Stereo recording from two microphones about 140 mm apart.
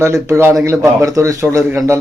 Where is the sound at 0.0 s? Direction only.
20° right (ahead or behind).